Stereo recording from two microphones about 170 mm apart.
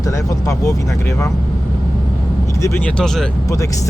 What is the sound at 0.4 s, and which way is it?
Speech, 20° left (ahead or behind).